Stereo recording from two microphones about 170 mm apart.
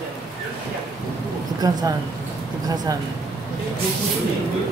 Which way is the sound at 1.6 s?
20° right (ahead or behind).